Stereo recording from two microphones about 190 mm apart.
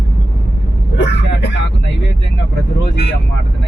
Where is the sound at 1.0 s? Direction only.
65° left (ahead or behind).